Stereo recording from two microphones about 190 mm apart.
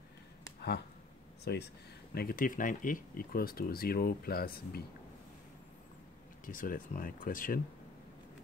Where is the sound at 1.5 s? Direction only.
60° left (ahead or behind).